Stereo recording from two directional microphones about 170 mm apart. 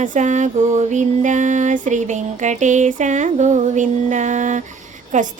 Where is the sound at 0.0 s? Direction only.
45° right (ahead or behind).